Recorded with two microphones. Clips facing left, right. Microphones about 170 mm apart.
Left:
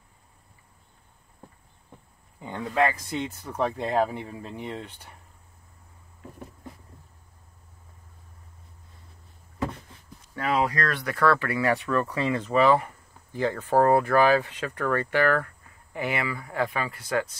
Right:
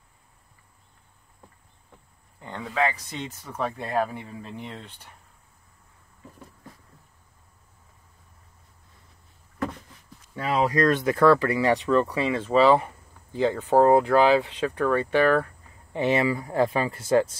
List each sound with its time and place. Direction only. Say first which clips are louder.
2.4 s speech: left 2 dB; 5° left (ahead or behind)
10.5 s speech: right 5 dB; 20° right (ahead or behind)